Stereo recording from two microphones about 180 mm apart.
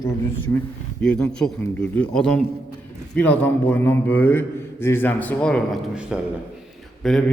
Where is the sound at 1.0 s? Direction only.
5° left (ahead or behind).